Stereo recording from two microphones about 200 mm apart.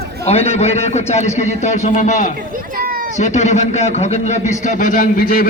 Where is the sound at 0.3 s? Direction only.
30° left (ahead or behind).